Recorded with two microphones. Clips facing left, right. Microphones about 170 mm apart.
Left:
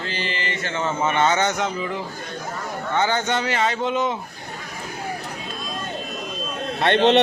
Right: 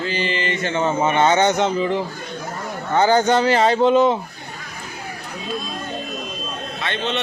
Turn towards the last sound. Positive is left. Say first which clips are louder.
# left 8 dB
turn(degrees=65)  # may be behind; listen again after turning